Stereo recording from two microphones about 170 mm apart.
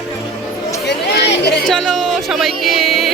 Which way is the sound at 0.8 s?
85° left.